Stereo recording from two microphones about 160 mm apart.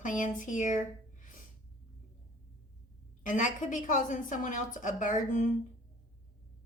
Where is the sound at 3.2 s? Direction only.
55° left (ahead or behind).